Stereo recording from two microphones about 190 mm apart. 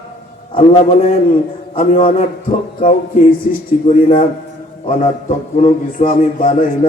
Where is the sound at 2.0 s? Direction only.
40° left (ahead or behind).